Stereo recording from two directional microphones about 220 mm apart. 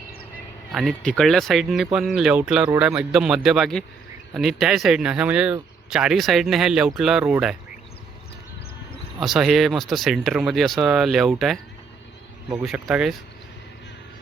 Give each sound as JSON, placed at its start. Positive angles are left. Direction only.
{"t": 0.7, "sound": "speech", "side_deg": 0}
{"t": 9.2, "sound": "speech", "side_deg": 0}
{"t": 12.6, "sound": "speech", "side_deg": -5}